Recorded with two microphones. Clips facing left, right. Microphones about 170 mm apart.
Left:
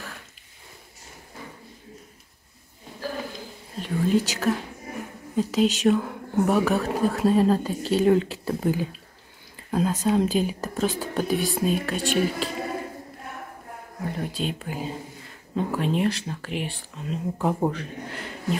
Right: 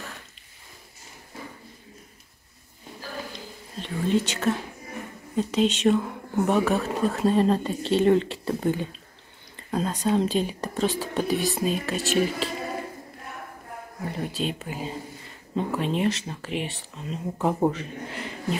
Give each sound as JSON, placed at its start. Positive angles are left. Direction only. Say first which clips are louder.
{"t": 3.3, "sound": "speech", "louder": "left 2 dB", "side_deg": 0}
{"t": 14.0, "sound": "speech", "louder": "even", "side_deg": 0}